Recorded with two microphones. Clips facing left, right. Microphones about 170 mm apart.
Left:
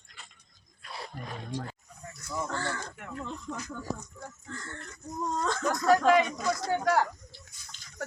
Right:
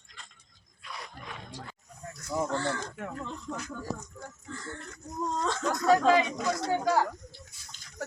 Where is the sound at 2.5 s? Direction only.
Centre (ahead or behind).